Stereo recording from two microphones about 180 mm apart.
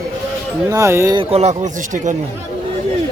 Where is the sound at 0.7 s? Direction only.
15° right (ahead or behind).